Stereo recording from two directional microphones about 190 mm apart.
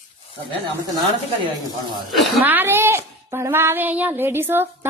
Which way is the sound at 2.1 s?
5° right (ahead or behind).